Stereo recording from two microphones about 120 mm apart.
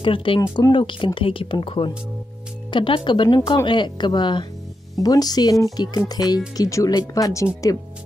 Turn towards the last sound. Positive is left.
turn(degrees=25)  # may be behind; listen again after turning